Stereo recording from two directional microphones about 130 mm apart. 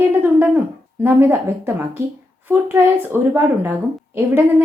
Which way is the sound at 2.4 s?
15° right (ahead or behind).